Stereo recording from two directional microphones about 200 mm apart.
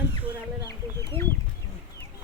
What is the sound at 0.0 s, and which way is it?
Bird, 10° right (ahead or behind).